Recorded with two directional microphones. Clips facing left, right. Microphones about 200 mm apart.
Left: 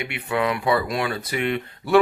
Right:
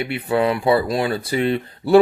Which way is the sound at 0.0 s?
35° right (ahead or behind).